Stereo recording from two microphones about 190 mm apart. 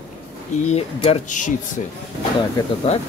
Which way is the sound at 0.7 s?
35° left (ahead or behind).